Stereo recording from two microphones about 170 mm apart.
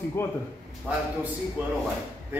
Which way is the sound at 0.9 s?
5° right (ahead or behind).